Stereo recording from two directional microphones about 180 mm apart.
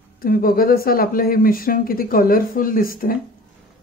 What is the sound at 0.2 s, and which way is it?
A woman's voice, 55° left (ahead or behind).